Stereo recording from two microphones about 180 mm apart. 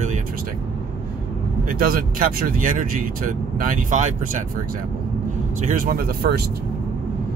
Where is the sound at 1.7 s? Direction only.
50° right (ahead or behind).